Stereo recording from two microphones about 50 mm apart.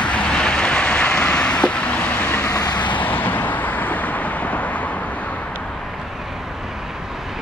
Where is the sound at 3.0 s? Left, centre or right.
Left.